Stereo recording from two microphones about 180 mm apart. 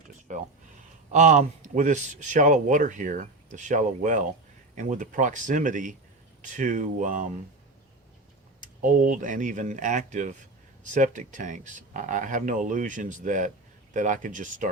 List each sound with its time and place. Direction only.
1.1 s speech: 40° right (ahead or behind)
8.6 s speech: 50° right (ahead or behind)